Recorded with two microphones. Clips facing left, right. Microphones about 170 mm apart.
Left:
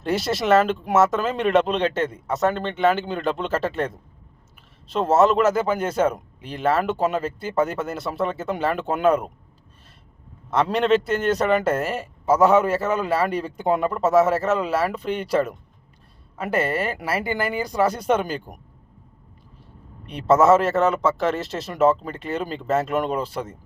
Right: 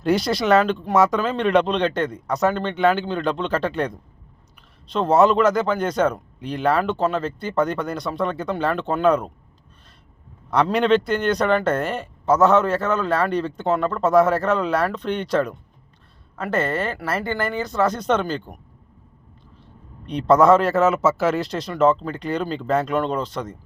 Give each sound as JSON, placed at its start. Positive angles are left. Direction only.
{"t": 0.0, "sound": "speech", "side_deg": 0}
{"t": 10.5, "sound": "speech", "side_deg": 0}
{"t": 20.1, "sound": "speech", "side_deg": 5}